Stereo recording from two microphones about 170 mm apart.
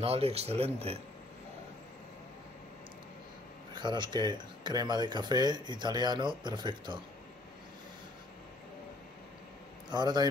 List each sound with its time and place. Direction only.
0.0 s speech: 35° right (ahead or behind)
3.7 s speech: 25° right (ahead or behind)
9.8 s a man's voice: 25° right (ahead or behind)